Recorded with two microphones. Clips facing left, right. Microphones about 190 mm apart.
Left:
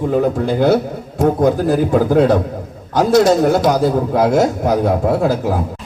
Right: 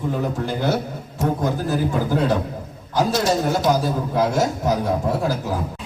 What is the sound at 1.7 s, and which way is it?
A man's voice, 60° left (ahead or behind).